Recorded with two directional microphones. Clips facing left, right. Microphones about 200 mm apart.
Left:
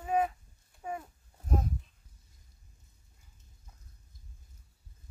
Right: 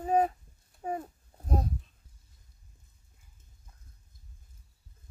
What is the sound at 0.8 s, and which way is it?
Babbling, 35° right (ahead or behind).